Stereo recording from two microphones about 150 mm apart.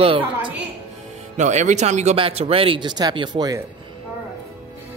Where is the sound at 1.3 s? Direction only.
50° right (ahead or behind); by 3.6 s 30° right (ahead or behind).